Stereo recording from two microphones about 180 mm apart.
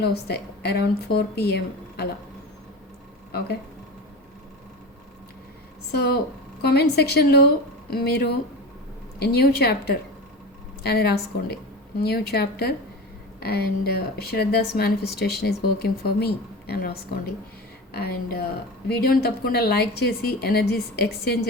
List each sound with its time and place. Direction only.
0.0 s a woman's voice: 65° left (ahead or behind)
5.9 s a woman's voice: 65° left (ahead or behind)